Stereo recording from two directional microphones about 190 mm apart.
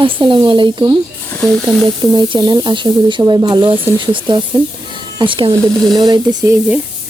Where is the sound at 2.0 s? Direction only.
20° right (ahead or behind).